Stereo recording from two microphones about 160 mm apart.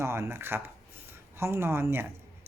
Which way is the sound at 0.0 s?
15° right (ahead or behind).